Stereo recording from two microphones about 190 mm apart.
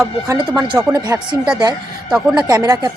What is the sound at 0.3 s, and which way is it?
A woman's voice, 15° right (ahead or behind).